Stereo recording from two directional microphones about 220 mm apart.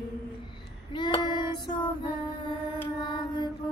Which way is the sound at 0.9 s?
20° left (ahead or behind).